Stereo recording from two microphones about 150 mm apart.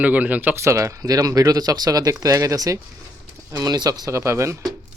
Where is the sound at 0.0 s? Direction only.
10° right (ahead or behind).